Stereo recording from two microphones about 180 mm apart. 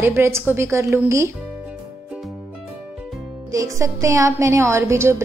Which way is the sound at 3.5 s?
20° right (ahead or behind).